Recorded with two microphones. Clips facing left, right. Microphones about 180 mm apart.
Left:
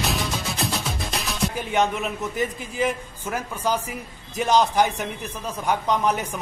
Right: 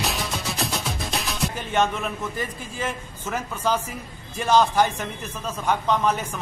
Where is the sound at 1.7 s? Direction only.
15° left (ahead or behind).